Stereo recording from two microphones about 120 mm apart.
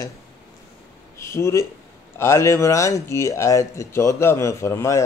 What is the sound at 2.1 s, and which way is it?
Speech, 25° left (ahead or behind).